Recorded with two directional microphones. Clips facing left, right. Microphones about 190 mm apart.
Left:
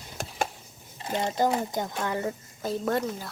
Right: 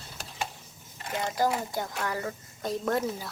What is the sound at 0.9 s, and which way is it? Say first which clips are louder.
Speech: left 2 dB; 25° left (ahead or behind).